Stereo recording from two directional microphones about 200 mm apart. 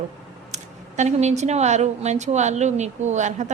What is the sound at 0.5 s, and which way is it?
Speech, 35° right (ahead or behind).